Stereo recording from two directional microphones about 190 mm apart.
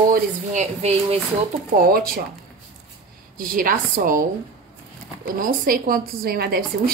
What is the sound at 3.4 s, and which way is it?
A woman's voice, 45° right (ahead or behind).